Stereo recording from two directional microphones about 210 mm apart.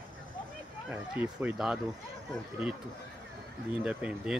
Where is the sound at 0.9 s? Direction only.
10° right (ahead or behind).